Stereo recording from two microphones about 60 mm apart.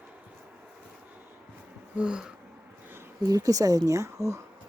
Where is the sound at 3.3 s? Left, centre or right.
Right.